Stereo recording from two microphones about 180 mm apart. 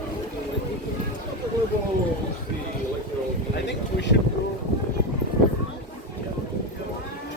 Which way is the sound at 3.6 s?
75° left (ahead or behind).